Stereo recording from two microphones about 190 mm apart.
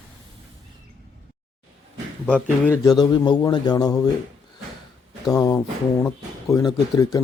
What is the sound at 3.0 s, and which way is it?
Speech, 20° left (ahead or behind).